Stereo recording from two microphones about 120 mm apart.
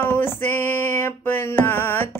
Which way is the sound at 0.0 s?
15° left (ahead or behind).